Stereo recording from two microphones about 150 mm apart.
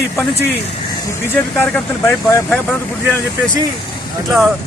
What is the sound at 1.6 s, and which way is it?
Speech, 15° left (ahead or behind).